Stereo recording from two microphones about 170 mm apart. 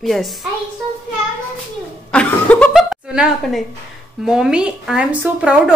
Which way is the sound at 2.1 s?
5° left (ahead or behind).